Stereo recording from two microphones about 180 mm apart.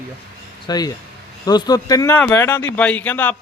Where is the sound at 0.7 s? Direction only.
20° left (ahead or behind).